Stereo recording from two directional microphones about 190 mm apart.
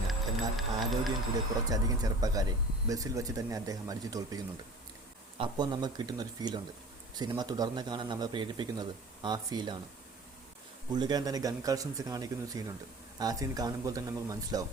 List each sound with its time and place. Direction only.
0.1 s speech: centre (ahead or behind)
1.7 s speech: 20° right (ahead or behind)
5.4 s speech: 20° right (ahead or behind)
10.9 s speech: 20° right (ahead or behind)